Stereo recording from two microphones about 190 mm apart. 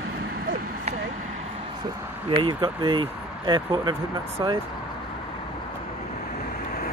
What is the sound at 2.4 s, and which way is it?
Speech, 25° right (ahead or behind).